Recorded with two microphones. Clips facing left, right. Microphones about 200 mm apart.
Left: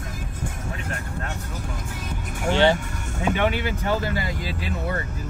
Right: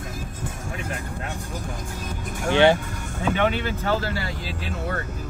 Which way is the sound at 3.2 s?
10° left (ahead or behind).